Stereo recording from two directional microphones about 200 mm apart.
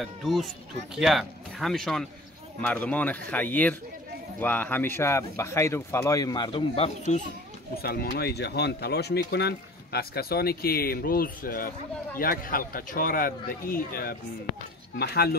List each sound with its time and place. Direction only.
0.0 s speech: centre (ahead or behind); by 7.2 s 30° left (ahead or behind)
7.7 s speech: 50° left (ahead or behind)